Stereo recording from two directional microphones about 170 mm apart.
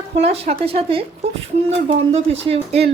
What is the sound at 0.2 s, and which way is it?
A woman's voice, 35° right (ahead or behind).